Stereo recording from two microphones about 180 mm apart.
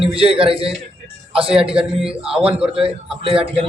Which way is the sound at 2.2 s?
5° right (ahead or behind).